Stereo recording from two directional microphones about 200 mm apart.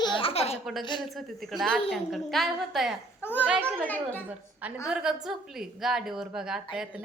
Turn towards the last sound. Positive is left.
turn(degrees=-5)  # may be behind; listen again after turning